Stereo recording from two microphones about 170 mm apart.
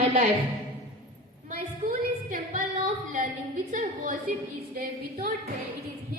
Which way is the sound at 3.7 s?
50° right (ahead or behind).